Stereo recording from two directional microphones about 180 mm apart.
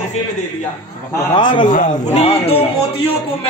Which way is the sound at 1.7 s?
45° left (ahead or behind).